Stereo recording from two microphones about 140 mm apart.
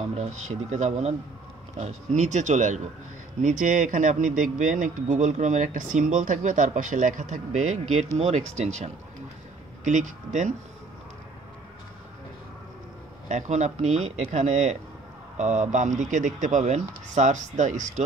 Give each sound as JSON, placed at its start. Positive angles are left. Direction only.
{"t": 0.1, "sound": "a man's voice", "side_deg": -55}
{"t": 13.3, "sound": "a man's voice", "side_deg": -55}